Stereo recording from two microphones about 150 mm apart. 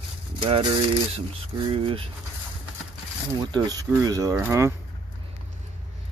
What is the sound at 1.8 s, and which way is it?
Speech, 40° right (ahead or behind).